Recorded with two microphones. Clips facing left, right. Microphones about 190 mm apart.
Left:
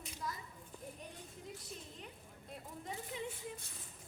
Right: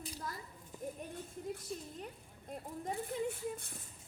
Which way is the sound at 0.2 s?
50° right (ahead or behind).